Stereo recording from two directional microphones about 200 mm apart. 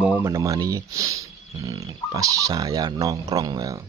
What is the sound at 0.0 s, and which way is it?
Speech, 10° right (ahead or behind).